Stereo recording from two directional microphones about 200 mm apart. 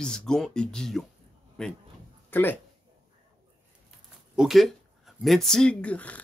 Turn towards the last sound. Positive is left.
turn(degrees=5)  # may be behind; listen again after turning